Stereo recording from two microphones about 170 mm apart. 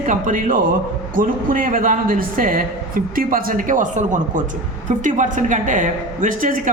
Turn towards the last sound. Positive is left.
turn(degrees=-50)  # may be behind; listen again after turning